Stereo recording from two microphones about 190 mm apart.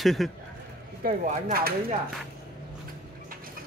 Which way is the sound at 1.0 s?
50° right (ahead or behind).